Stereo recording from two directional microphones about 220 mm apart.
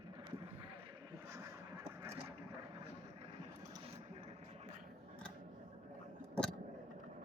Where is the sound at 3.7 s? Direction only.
25° right (ahead or behind).